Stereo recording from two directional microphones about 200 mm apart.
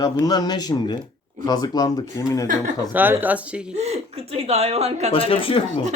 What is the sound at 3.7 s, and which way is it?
Speech, 30° right (ahead or behind).